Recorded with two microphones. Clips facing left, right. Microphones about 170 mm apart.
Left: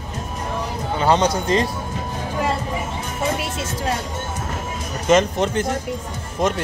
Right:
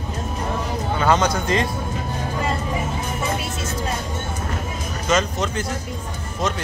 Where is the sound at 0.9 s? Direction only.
30° left (ahead or behind).